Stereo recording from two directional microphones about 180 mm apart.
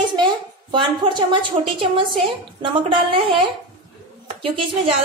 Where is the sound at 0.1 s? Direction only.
25° right (ahead or behind).